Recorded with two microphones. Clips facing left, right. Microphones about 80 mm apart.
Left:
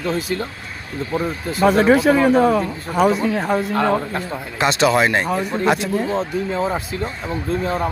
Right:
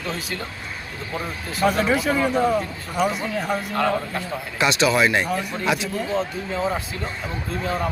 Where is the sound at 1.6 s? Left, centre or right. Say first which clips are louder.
Left 6 dB; left.